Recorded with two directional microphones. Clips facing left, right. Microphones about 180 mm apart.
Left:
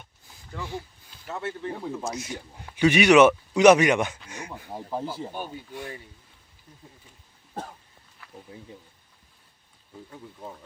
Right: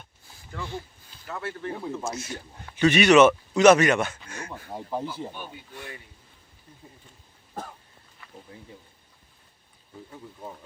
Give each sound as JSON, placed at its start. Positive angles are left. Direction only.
{"t": 0.5, "sound": "speech", "side_deg": 10}
{"t": 1.3, "sound": "speech", "side_deg": 25}
{"t": 1.9, "sound": "speech", "side_deg": 10}
{"t": 4.3, "sound": "a sound", "side_deg": 15}
{"t": 4.7, "sound": "speech", "side_deg": 0}
{"t": 8.2, "sound": "a sound", "side_deg": 0}
{"t": 10.1, "sound": "speech", "side_deg": -5}